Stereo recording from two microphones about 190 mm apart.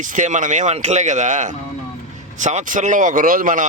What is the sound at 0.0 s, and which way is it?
Speech, 40° right (ahead or behind).